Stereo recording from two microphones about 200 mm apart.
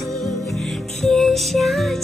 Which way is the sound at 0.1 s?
Centre (ahead or behind).